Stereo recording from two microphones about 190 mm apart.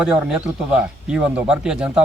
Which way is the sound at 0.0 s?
5° right (ahead or behind).